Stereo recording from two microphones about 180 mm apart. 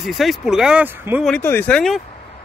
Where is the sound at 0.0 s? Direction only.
Centre (ahead or behind).